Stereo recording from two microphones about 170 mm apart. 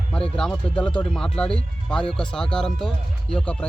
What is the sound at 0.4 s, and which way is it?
Speech, 5° left (ahead or behind).